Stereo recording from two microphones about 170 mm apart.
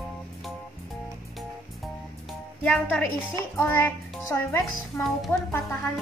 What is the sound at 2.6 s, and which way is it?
A child's voice, 10° left (ahead or behind).